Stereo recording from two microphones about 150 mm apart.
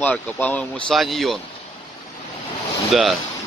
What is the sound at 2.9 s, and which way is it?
Speech, centre (ahead or behind).